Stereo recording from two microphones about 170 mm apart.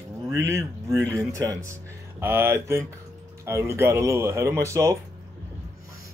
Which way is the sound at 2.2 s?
10° right (ahead or behind).